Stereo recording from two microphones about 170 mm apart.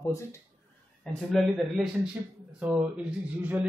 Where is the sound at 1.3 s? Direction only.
Centre (ahead or behind).